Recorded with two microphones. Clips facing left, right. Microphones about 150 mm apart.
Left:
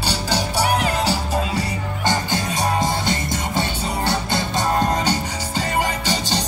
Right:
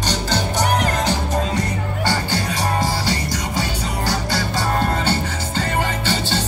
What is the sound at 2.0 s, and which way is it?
Music, 20° left (ahead or behind).